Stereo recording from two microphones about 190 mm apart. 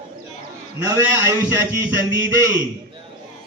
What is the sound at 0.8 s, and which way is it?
A man's voice, 10° right (ahead or behind).